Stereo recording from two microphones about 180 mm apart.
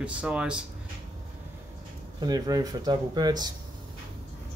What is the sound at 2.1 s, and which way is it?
Speech, 20° right (ahead or behind).